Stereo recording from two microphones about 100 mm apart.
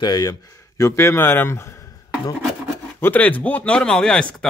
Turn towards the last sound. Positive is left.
turn(degrees=10)  # may be behind; listen again after turning